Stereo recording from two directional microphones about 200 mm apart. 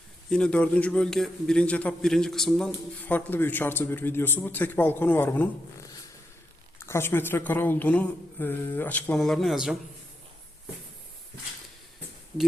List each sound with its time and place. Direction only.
0.3 s a man's voice: 5° left (ahead or behind)
6.8 s a man's voice: 10° left (ahead or behind)